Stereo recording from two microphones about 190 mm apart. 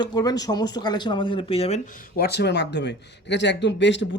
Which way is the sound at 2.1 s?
60° left (ahead or behind).